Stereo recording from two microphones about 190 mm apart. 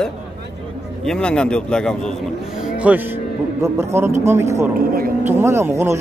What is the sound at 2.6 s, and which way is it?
Music, 5° right (ahead or behind).